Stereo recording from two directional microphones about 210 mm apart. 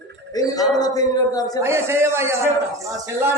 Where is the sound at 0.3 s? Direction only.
15° left (ahead or behind).